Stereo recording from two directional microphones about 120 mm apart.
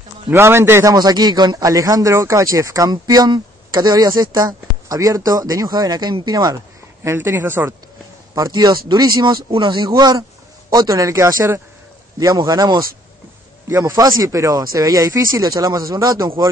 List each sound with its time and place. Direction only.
0.3 s speech: 20° right (ahead or behind)
0.9 s speech: 35° right (ahead or behind)
7.1 s speech: 20° right (ahead or behind)
8.4 s speech: 30° right (ahead or behind)
13.7 s speech: 25° right (ahead or behind)